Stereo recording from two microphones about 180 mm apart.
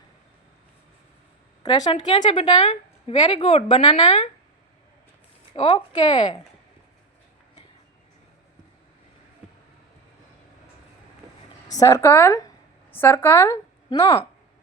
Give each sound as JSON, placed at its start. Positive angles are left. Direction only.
{"t": 1.6, "sound": "speech", "side_deg": 25}
{"t": 5.5, "sound": "speech", "side_deg": 30}
{"t": 11.7, "sound": "a woman's voice", "side_deg": 20}